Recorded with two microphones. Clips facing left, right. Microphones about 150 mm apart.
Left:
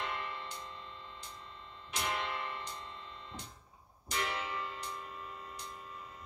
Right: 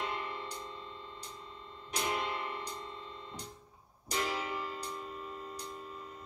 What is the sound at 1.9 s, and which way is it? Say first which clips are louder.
Music: right 2 dB; 35° right (ahead or behind).